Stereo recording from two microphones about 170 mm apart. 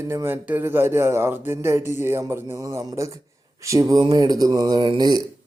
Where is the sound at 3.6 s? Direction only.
20° right (ahead or behind).